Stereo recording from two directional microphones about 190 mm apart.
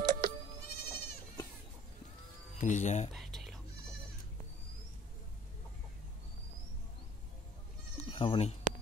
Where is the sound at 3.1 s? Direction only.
Centre (ahead or behind).